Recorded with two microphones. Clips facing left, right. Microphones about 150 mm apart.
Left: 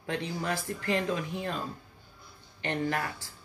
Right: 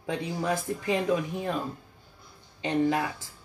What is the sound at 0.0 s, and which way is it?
Speech, 15° right (ahead or behind).